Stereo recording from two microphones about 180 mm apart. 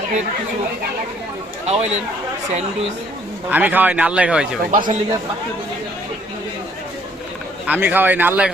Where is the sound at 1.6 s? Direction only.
35° right (ahead or behind).